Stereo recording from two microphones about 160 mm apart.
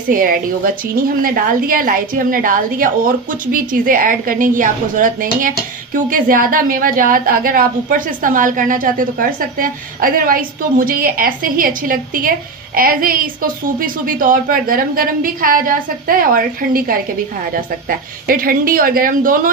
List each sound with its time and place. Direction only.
0.1 s a woman's voice: 65° right (ahead or behind)